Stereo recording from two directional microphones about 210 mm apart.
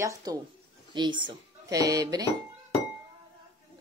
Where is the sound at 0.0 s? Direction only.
15° right (ahead or behind).